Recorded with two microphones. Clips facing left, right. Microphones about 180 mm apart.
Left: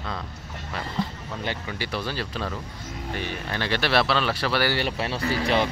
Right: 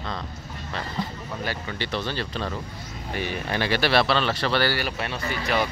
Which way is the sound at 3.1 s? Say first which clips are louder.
Right 4 dB; 10° right (ahead or behind).